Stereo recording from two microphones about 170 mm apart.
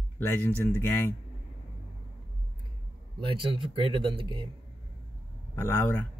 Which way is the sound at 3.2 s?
30° right (ahead or behind).